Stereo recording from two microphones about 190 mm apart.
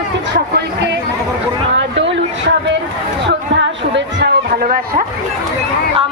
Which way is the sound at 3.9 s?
70° right (ahead or behind).